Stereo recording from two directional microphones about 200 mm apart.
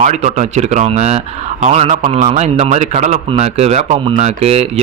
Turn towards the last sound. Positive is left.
turn(degrees=-30)  # may be behind; listen again after turning